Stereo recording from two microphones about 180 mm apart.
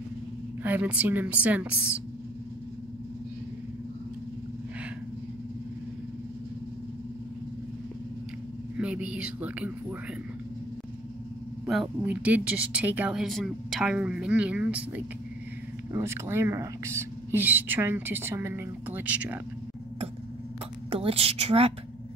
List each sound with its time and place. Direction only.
0.7 s speech: 10° right (ahead or behind)
8.7 s speech: 5° right (ahead or behind)
11.6 s speech: 5° right (ahead or behind)
15.9 s speech: 15° right (ahead or behind)
20.9 s a woman's voice: 30° right (ahead or behind)